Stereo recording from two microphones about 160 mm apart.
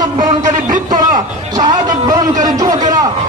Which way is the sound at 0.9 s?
25° right (ahead or behind).